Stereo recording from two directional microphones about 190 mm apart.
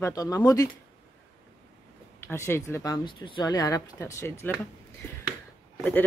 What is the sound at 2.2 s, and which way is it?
Speech, 10° left (ahead or behind).